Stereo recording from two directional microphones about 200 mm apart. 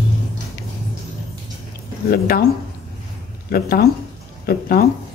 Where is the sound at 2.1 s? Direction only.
45° left (ahead or behind).